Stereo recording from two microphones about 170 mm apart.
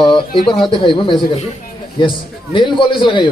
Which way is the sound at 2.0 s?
30° left (ahead or behind).